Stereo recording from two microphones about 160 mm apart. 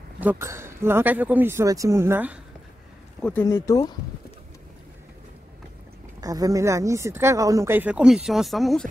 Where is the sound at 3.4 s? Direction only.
20° left (ahead or behind).